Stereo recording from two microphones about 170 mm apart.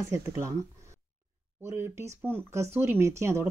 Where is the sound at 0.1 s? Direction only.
15° right (ahead or behind).